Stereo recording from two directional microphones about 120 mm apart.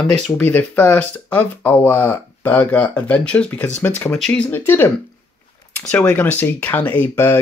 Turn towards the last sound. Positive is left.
turn(degrees=20)  # may be behind; listen again after turning